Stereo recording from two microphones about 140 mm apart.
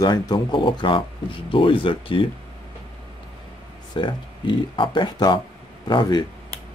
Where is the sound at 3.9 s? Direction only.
35° left (ahead or behind).